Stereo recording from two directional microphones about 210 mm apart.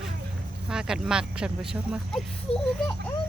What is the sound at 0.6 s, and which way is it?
Speech, 5° right (ahead or behind).